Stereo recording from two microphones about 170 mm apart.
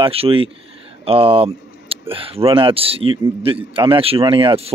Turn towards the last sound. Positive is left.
turn(degrees=-35)  # may be behind; listen again after turning